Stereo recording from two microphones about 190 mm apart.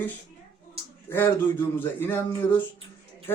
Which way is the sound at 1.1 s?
10° left (ahead or behind).